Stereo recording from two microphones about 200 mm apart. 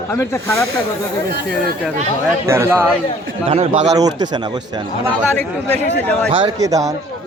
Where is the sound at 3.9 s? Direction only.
20° right (ahead or behind).